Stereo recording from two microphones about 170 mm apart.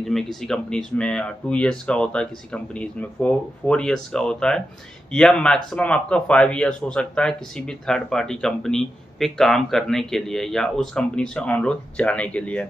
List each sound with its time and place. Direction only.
0.0 s speech: centre (ahead or behind)